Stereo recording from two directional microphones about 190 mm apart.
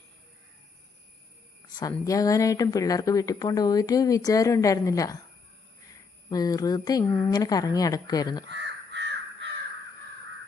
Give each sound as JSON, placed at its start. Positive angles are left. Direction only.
{"t": 1.7, "sound": "speech", "side_deg": 20}
{"t": 6.3, "sound": "speech", "side_deg": 20}
{"t": 8.4, "sound": "crow", "side_deg": -65}